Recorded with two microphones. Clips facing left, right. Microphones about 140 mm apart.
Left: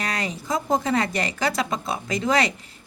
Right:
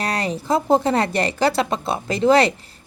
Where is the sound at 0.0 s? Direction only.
35° right (ahead or behind).